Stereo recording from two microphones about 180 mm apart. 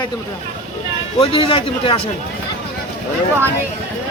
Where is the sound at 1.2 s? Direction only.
30° left (ahead or behind).